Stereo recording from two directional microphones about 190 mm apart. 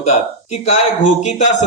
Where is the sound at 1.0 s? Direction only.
40° left (ahead or behind).